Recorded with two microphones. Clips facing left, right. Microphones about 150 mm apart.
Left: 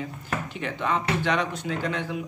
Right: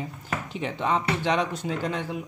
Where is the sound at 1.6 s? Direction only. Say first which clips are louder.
Even; 40° right (ahead or behind).